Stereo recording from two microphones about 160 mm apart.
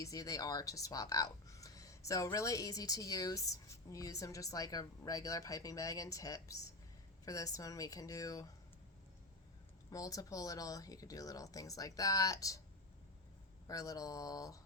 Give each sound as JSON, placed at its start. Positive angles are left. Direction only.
{"t": 0.0, "sound": "a woman's voice", "side_deg": 20}
{"t": 9.9, "sound": "a woman's voice", "side_deg": 20}
{"t": 13.7, "sound": "a woman's voice", "side_deg": 20}